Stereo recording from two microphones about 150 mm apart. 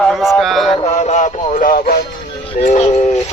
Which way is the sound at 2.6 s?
55° left (ahead or behind).